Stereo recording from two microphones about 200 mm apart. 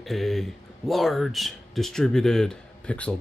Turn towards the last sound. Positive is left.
turn(degrees=5)  # may be behind; listen again after turning